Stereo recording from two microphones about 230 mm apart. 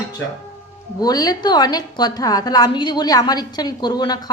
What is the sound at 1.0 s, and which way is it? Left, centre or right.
A woman's voice, centre.